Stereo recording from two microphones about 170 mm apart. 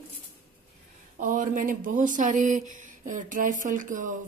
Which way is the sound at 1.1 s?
50° right (ahead or behind).